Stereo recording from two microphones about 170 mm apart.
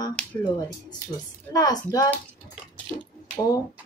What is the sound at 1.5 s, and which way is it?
Speech, 25° left (ahead or behind).